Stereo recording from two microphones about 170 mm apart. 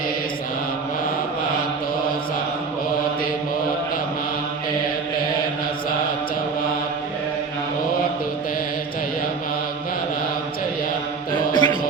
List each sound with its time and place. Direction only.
11.3 s mantra: 25° left (ahead or behind)